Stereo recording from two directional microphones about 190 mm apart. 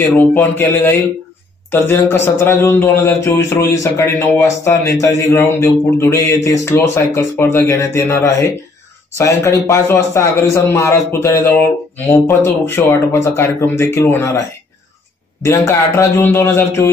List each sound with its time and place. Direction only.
0.2 s a man's voice: 10° left (ahead or behind)
15.4 s a man's voice: 15° left (ahead or behind)